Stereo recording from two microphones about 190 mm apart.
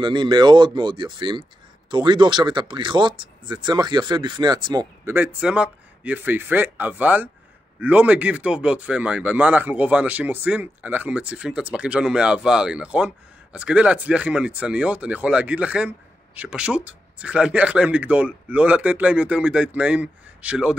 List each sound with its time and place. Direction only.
0.0 s speech: 25° right (ahead or behind); by 20.7 s 5° right (ahead or behind)